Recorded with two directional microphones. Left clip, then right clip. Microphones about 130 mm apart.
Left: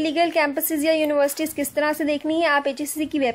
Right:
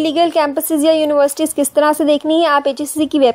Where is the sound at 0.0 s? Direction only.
55° right (ahead or behind).